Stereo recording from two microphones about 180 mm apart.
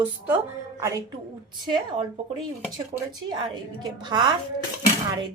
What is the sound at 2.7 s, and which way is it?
Speech, 20° right (ahead or behind).